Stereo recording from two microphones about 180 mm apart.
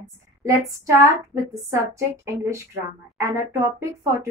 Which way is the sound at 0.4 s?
15° right (ahead or behind).